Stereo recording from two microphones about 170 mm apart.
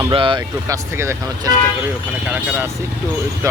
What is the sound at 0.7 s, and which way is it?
Speech, 20° right (ahead or behind).